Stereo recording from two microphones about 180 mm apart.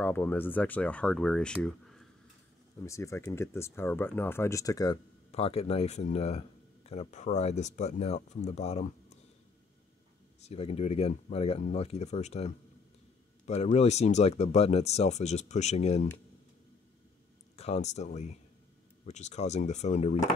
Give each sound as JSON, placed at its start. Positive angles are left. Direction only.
{"t": 0.0, "sound": "speech", "side_deg": 10}
{"t": 2.8, "sound": "speech", "side_deg": 15}
{"t": 5.3, "sound": "speech", "side_deg": 35}
{"t": 10.4, "sound": "speech", "side_deg": 35}
{"t": 17.6, "sound": "speech", "side_deg": 35}